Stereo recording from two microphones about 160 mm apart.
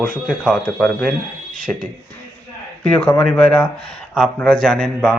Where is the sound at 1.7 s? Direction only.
15° left (ahead or behind).